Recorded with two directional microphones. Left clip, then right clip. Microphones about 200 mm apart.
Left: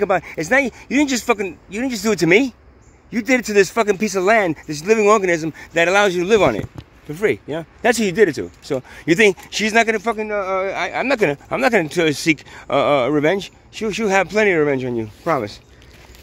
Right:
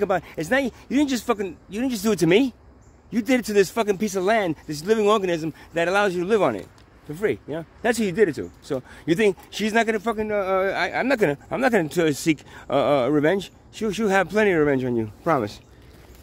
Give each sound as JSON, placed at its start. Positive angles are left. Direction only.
{"t": 0.0, "sound": "speech", "side_deg": 10}
{"t": 10.2, "sound": "speech", "side_deg": -20}